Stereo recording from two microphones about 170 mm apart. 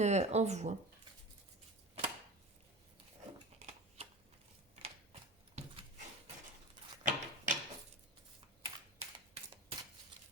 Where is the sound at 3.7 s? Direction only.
35° right (ahead or behind).